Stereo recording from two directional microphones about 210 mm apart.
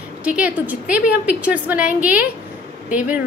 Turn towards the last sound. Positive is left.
turn(degrees=-5)  # may be behind; listen again after turning